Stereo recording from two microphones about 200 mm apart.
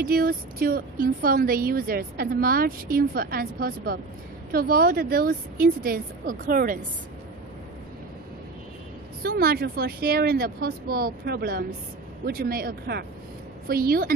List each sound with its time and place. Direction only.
0.0 s speech: 45° right (ahead or behind)
9.2 s speech: 50° right (ahead or behind)